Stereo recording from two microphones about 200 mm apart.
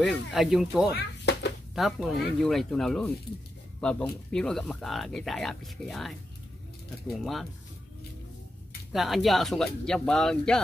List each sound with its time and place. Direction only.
0.0 s speech: centre (ahead or behind)
0.9 s a sound: 60° left (ahead or behind)
1.8 s speech: centre (ahead or behind)
4.3 s speech: 5° left (ahead or behind)
8.9 s speech: centre (ahead or behind)